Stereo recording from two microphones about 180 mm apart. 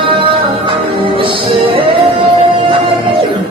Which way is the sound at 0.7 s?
30° right (ahead or behind).